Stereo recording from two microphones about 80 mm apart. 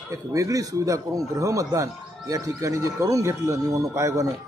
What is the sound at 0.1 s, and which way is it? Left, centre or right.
Speech, right.